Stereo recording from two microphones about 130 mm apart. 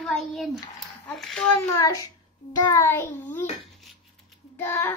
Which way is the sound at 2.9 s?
20° left (ahead or behind).